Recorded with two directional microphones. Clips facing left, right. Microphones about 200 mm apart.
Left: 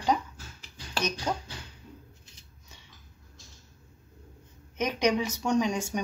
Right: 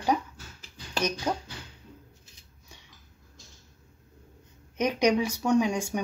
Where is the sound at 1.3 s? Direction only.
10° right (ahead or behind).